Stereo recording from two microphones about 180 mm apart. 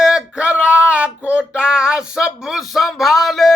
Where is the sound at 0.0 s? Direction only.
5° right (ahead or behind).